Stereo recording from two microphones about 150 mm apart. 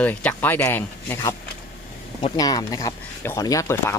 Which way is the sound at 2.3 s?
25° left (ahead or behind).